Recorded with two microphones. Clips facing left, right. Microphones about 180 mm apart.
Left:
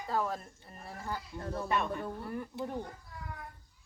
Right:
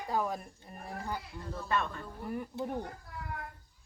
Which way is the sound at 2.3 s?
15° right (ahead or behind).